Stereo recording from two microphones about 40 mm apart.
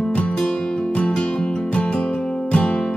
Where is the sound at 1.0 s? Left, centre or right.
Left.